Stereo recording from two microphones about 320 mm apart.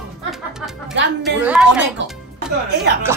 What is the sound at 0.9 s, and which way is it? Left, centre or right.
Speech, right.